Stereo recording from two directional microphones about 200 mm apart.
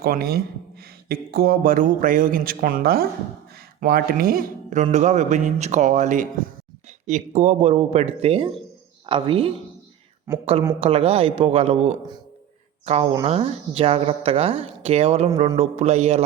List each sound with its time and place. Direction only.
0.0 s speech: 50° right (ahead or behind); by 9.5 s 25° right (ahead or behind)
10.3 s speech: 15° right (ahead or behind)
10.8 s speech: 30° right (ahead or behind)